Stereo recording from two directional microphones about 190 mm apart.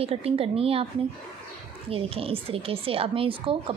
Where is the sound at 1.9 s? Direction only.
30° right (ahead or behind).